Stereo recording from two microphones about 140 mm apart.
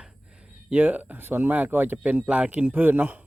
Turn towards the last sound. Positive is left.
turn(degrees=-15)  # may be behind; listen again after turning